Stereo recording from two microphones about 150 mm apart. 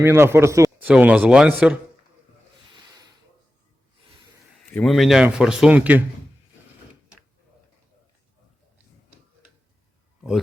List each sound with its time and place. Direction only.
0.0 s speech: 15° right (ahead or behind)
4.7 s a man's voice: 5° left (ahead or behind)